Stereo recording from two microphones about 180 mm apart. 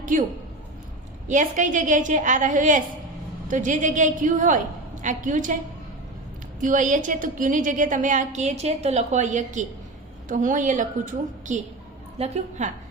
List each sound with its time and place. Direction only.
0.0 s a woman's voice: 45° right (ahead or behind)
1.3 s a woman's voice: 45° right (ahead or behind)
6.6 s a woman's voice: 45° right (ahead or behind)